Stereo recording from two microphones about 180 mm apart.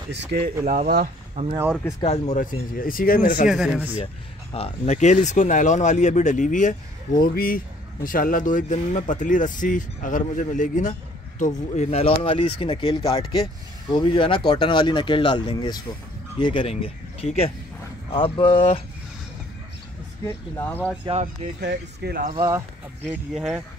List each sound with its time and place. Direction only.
0.7 s speech: 50° right (ahead or behind)
1.9 s speech: 25° left (ahead or behind)
2.2 s speech: 45° left (ahead or behind)
3.4 s speech: centre (ahead or behind)
4.6 s speech: 35° left (ahead or behind)
20.2 s speech: 10° left (ahead or behind)
21.0 s speech: 35° right (ahead or behind)
21.5 s speech: 65° right (ahead or behind)
23.0 s speech: 5° right (ahead or behind)